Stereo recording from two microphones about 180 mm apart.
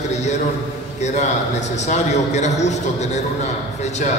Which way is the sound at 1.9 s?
40° left (ahead or behind).